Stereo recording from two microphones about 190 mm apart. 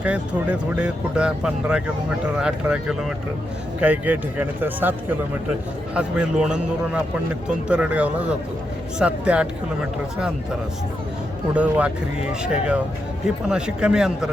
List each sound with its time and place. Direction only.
0.0 s speech: 5° right (ahead or behind)
11.5 s speech: 5° right (ahead or behind)